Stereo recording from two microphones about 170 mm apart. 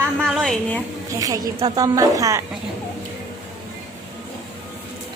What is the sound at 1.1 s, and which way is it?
A woman's voice, 20° right (ahead or behind).